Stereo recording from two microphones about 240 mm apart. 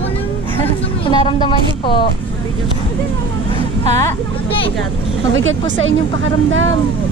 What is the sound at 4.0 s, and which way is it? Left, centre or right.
Speech, left.